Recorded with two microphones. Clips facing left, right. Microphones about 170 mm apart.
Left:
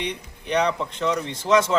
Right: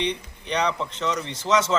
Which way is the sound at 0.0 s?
10° left (ahead or behind).